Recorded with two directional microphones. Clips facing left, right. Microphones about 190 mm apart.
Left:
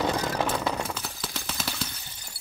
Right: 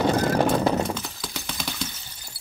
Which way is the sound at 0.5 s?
30° right (ahead or behind).